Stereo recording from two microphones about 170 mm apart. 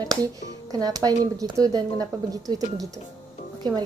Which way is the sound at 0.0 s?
20° right (ahead or behind).